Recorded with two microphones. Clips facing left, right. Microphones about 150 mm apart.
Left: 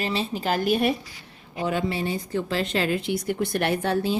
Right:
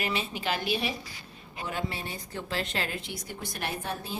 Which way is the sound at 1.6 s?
90° left.